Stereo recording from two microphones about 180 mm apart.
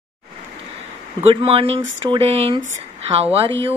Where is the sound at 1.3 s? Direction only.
30° right (ahead or behind).